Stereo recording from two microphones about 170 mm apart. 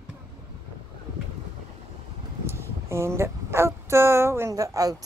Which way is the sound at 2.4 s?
15° right (ahead or behind).